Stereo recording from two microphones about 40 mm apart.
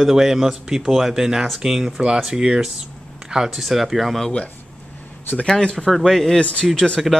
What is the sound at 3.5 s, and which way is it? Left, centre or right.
Speech, centre.